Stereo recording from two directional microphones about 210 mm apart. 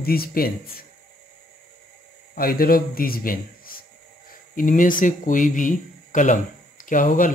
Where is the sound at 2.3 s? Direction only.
45° left (ahead or behind).